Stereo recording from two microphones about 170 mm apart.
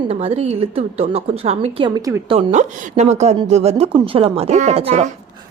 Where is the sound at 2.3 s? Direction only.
45° right (ahead or behind).